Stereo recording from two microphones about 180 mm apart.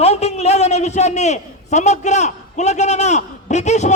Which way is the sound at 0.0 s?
35° left (ahead or behind).